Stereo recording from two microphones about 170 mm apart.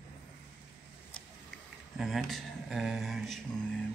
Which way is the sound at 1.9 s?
Centre (ahead or behind).